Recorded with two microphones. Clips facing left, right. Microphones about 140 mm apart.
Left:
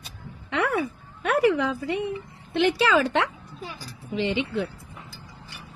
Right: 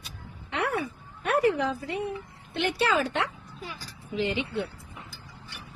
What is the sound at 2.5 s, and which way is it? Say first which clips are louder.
A woman's voice: left 5 dB; 90° left.